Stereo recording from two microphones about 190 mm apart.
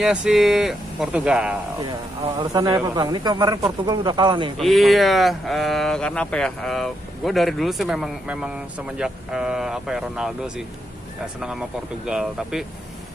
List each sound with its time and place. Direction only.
0.0 s speech: 5° right (ahead or behind)
2.5 s speech: 20° right (ahead or behind)
4.6 s speech: centre (ahead or behind)
12.1 s speech: 5° right (ahead or behind)